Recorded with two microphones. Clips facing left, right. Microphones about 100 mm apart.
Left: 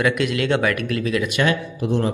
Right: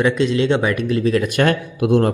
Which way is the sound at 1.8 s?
55° right (ahead or behind).